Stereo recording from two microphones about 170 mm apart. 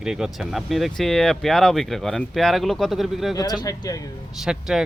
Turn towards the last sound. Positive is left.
turn(degrees=-5)  # may be behind; listen again after turning